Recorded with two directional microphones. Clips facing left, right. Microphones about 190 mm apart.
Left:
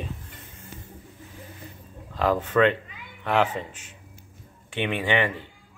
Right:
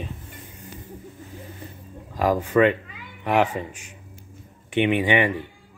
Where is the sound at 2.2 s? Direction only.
10° right (ahead or behind).